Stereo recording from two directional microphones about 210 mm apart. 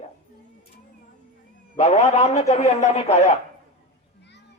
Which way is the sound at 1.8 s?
30° left (ahead or behind).